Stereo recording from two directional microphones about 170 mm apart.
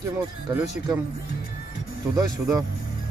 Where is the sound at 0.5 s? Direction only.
20° right (ahead or behind).